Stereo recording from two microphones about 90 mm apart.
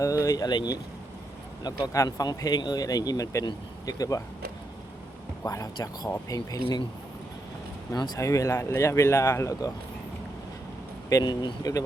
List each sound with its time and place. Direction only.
0.0 s speech: 35° left (ahead or behind)
0.4 s speech: 50° left (ahead or behind)
2.0 s speech: 45° left (ahead or behind)
5.4 s speech: 40° left (ahead or behind)
7.9 s speech: 50° left (ahead or behind)
8.2 s speech: 35° left (ahead or behind)
11.1 s speech: 50° left (ahead or behind)